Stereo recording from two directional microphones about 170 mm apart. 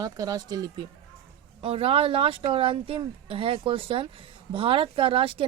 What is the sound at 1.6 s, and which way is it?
A woman's voice, 35° right (ahead or behind).